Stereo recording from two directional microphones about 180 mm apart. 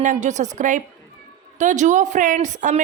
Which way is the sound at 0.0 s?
40° right (ahead or behind).